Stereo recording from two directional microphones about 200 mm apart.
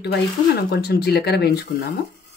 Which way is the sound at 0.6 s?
55° left (ahead or behind).